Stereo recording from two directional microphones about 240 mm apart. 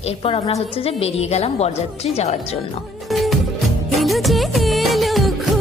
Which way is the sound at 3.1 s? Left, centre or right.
Centre.